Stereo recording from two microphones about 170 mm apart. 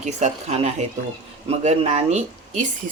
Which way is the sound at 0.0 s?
40° right (ahead or behind).